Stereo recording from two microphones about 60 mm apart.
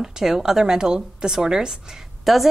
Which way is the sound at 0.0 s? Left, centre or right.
Centre.